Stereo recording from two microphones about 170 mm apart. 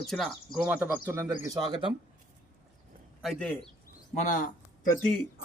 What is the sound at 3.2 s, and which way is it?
Speech, 5° left (ahead or behind).